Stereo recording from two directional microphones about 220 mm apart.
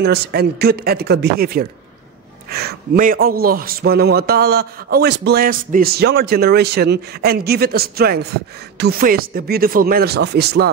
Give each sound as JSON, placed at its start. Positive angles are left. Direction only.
{"t": 0.0, "sound": "a man's voice", "side_deg": -50}